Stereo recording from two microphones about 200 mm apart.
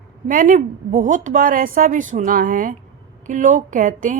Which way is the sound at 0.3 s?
40° right (ahead or behind).